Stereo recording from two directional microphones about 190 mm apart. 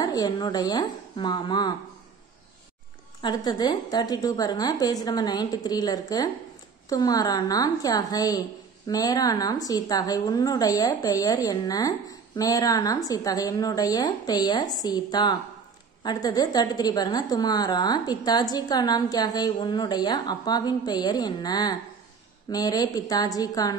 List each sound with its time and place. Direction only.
0.0 s a woman's voice: 20° left (ahead or behind)
3.2 s a woman's voice: 20° left (ahead or behind)